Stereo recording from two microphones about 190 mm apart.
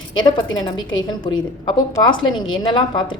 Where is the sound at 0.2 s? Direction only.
25° left (ahead or behind).